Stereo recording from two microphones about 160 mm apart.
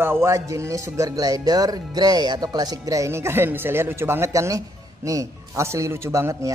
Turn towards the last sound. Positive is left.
turn(degrees=-20)  # may be behind; listen again after turning